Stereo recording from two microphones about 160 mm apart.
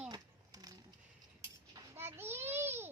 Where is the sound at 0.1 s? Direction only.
25° right (ahead or behind).